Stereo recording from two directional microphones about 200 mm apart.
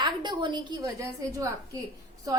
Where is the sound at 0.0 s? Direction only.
20° right (ahead or behind).